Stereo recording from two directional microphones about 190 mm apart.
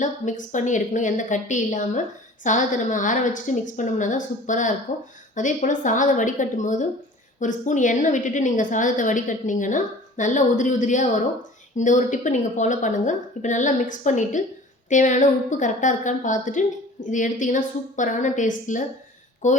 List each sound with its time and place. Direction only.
0.0 s a woman's voice: 40° left (ahead or behind)